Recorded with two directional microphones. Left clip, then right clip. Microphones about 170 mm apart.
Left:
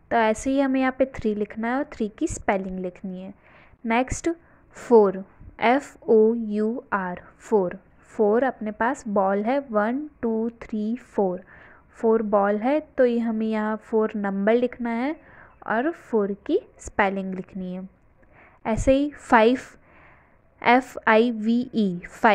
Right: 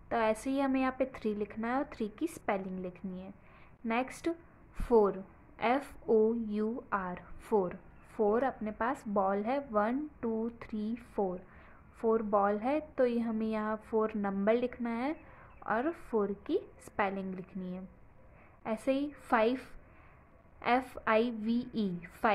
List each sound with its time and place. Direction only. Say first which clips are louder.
0.1 s a woman's voice: left 10 dB; 35° left (ahead or behind)